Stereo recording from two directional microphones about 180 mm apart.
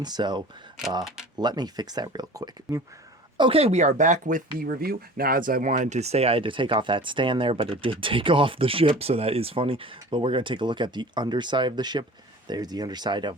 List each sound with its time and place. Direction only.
0.0 s speech: 25° right (ahead or behind)
3.3 s speech: 30° right (ahead or behind)